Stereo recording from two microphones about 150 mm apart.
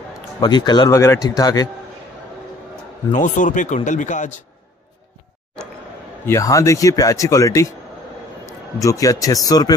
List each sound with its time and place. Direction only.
0.4 s speech: 30° left (ahead or behind)
3.1 s speech: 60° left (ahead or behind)
6.2 s a man's voice: 20° left (ahead or behind)